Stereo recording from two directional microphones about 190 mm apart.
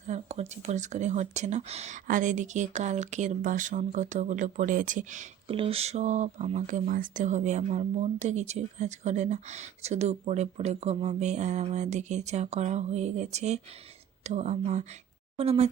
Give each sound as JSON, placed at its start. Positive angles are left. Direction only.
{"t": 0.1, "sound": "speech", "side_deg": -35}